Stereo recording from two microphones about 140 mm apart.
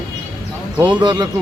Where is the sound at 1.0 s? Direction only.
30° right (ahead or behind).